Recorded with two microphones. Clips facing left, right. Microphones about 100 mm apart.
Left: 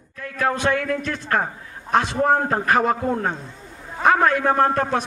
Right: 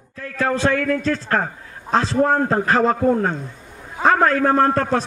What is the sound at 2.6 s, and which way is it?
Speech, 30° right (ahead or behind).